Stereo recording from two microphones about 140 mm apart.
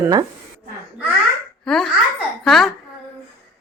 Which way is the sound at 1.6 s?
5° left (ahead or behind).